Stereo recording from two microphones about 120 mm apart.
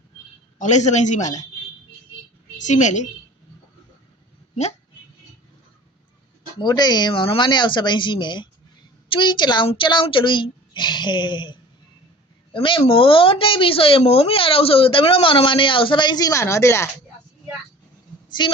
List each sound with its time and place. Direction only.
0.6 s a man's voice: 75° left (ahead or behind)
2.6 s a woman's voice: 90° left
6.6 s speech: 35° left (ahead or behind)
12.5 s speech: 50° left (ahead or behind); by 16.9 s 25° left (ahead or behind)
18.3 s speech: 40° left (ahead or behind)